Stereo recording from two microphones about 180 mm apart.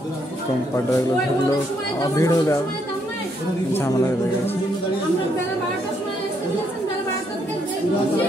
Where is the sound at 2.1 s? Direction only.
15° left (ahead or behind).